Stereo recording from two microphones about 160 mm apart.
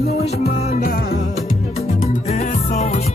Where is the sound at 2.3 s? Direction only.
45° left (ahead or behind).